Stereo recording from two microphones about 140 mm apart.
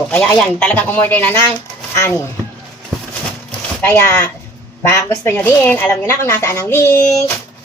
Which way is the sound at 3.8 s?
20° left (ahead or behind).